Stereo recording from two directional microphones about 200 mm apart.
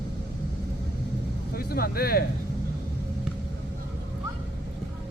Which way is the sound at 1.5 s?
50° left (ahead or behind).